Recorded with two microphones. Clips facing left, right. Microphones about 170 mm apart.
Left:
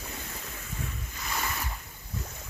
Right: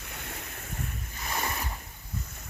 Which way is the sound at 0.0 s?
65° right (ahead or behind).